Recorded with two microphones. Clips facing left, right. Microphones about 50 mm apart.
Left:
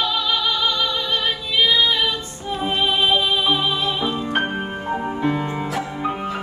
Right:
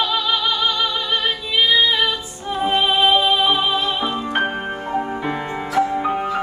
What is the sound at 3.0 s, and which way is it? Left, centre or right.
Music, centre.